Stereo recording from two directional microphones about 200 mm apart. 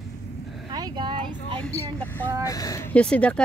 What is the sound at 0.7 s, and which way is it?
Speech, 20° right (ahead or behind).